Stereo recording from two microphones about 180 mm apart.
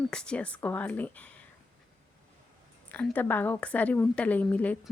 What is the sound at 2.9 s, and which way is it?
A woman's voice, 10° left (ahead or behind).